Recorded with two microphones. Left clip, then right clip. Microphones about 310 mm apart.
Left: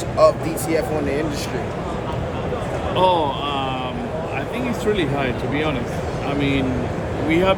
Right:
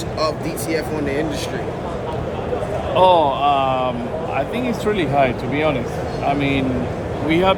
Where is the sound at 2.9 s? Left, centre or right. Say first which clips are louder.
Right 5 dB; centre.